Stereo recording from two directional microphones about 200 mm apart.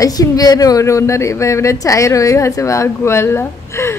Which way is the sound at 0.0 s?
20° left (ahead or behind).